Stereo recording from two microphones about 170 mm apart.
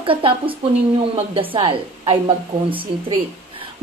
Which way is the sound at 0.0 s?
30° right (ahead or behind).